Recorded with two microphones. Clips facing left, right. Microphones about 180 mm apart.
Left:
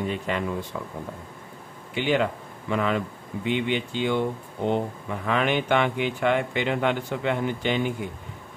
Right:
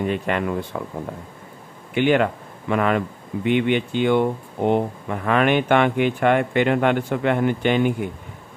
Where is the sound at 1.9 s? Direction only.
60° right (ahead or behind).